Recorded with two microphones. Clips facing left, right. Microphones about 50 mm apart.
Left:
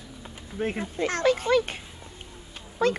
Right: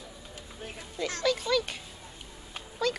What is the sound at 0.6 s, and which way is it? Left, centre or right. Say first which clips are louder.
Speech: left 15 dB; left.